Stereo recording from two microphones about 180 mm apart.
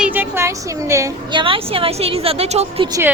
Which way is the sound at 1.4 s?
30° right (ahead or behind).